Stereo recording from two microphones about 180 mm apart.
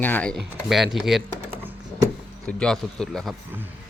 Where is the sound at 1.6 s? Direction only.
15° right (ahead or behind).